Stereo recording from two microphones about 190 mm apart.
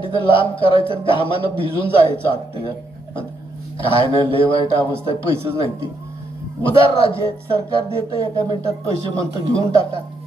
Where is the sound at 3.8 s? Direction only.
25° left (ahead or behind).